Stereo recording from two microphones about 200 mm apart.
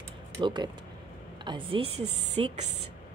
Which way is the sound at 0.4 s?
25° right (ahead or behind).